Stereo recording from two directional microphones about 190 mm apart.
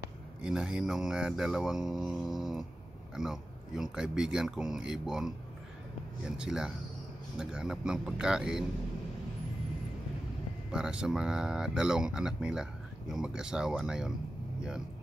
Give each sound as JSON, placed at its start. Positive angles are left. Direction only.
{"t": 0.4, "sound": "speech", "side_deg": -5}
{"t": 10.7, "sound": "speech", "side_deg": -5}